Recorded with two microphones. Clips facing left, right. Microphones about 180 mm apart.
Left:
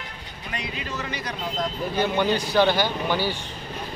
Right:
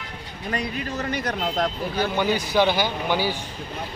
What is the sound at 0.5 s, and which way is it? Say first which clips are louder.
Speech: right 5 dB; 45° right (ahead or behind).